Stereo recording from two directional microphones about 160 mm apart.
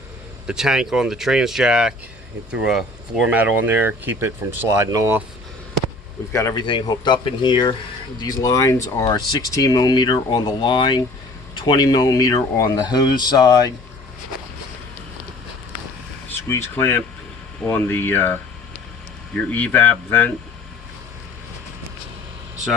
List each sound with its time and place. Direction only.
0.4 s speech: 5° right (ahead or behind); by 5.2 s 20° right (ahead or behind)
6.3 s speech: 20° left (ahead or behind)
16.3 s speech: 15° left (ahead or behind)
19.5 s speech: 10° left (ahead or behind)